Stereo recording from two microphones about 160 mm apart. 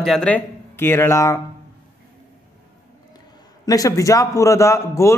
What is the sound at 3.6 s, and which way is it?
A man's voice, 20° left (ahead or behind).